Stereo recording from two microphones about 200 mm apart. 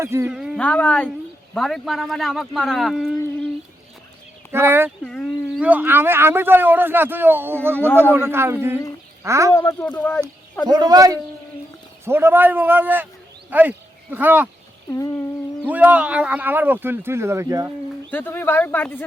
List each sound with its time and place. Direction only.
0.0 s speech: 15° right (ahead or behind)
4.5 s a man's voice: 10° right (ahead or behind)
5.0 s speech: 5° left (ahead or behind)
5.6 s a man's voice: 10° right (ahead or behind)
9.6 s speech: 15° left (ahead or behind)
10.7 s a man's voice: 20° right (ahead or behind)
14.8 s a sound: 15° left (ahead or behind)
15.6 s a man's voice: 10° right (ahead or behind)
18.1 s speech: 10° left (ahead or behind)